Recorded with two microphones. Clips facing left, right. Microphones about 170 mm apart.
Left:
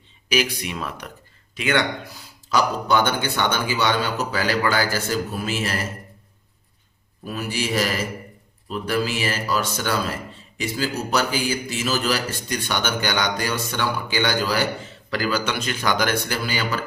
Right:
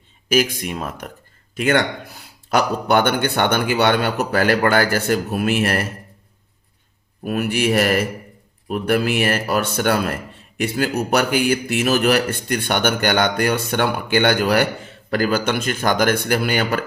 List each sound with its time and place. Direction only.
0.3 s speech: 50° right (ahead or behind)
7.3 s speech: 60° right (ahead or behind)